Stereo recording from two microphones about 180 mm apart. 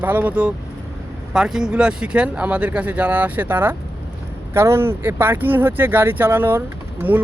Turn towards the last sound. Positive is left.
turn(degrees=-10)  # may be behind; listen again after turning